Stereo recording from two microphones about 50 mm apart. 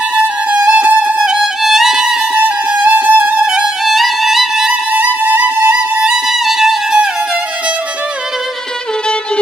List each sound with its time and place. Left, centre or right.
0.1 s violin: right
1.6 s violin: centre
2.4 s violin: right
3.8 s music: centre
4.9 s music: right
6.0 s music: centre